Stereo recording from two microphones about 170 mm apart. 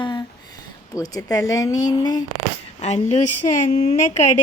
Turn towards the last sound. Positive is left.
turn(degrees=45)  # may be behind; listen again after turning